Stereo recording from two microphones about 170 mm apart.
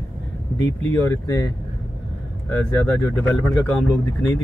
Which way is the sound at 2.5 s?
10° left (ahead or behind).